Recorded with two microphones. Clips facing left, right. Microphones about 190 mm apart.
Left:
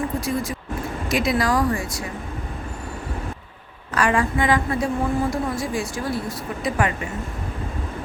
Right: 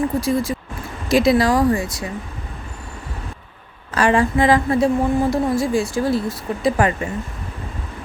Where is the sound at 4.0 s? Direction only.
25° right (ahead or behind).